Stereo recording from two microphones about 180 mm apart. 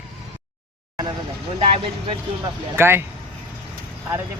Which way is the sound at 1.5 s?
30° right (ahead or behind).